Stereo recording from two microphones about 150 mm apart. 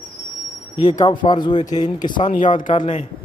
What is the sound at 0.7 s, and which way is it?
Speech, 30° left (ahead or behind).